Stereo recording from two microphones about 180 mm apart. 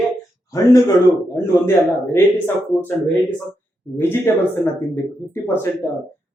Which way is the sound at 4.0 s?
10° left (ahead or behind).